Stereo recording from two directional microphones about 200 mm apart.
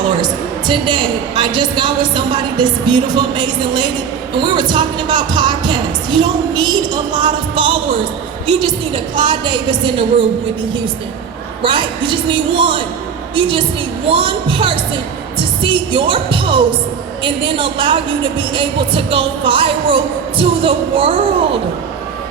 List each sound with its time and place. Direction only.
0.7 s a woman's voice: 25° right (ahead or behind)
9.1 s a woman's voice: 25° right (ahead or behind)
11.6 s a woman's voice: 25° right (ahead or behind)